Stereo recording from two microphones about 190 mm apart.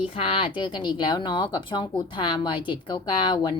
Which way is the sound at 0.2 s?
25° left (ahead or behind).